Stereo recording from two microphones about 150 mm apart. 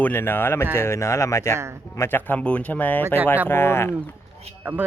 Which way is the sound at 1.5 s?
20° right (ahead or behind).